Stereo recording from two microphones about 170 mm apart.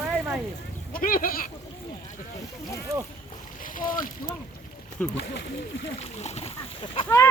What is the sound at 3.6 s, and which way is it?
Speech, 55° left (ahead or behind).